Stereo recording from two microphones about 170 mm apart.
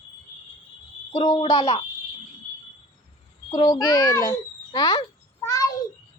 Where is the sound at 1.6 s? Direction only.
35° left (ahead or behind).